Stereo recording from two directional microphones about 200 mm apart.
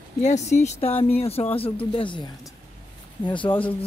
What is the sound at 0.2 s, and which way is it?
Speech, 35° left (ahead or behind).